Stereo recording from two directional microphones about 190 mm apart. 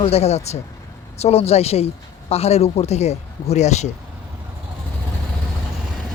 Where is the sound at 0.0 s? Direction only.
35° left (ahead or behind).